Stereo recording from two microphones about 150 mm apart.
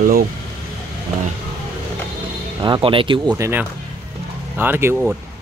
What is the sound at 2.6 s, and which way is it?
Speech, 35° right (ahead or behind).